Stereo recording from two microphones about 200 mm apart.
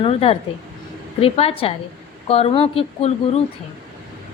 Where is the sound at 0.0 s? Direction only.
30° left (ahead or behind).